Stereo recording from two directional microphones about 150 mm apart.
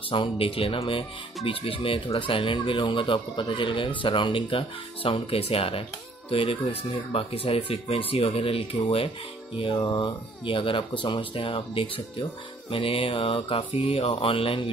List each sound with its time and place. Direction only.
0.1 s speech: 35° left (ahead or behind)